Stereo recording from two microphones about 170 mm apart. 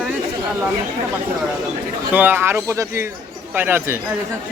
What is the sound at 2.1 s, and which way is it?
A man's voice, 10° right (ahead or behind).